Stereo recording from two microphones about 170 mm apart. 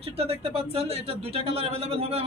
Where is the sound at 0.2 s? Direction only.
35° right (ahead or behind).